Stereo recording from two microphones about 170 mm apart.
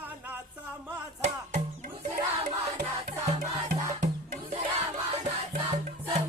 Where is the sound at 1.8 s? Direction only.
40° right (ahead or behind).